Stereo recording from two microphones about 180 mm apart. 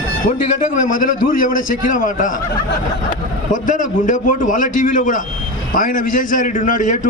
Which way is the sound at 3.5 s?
45° left (ahead or behind).